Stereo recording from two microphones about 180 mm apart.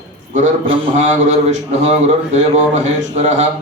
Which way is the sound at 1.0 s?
40° right (ahead or behind).